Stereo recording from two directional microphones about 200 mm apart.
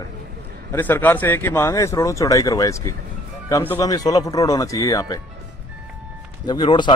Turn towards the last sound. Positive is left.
turn(degrees=25)  # may be behind; listen again after turning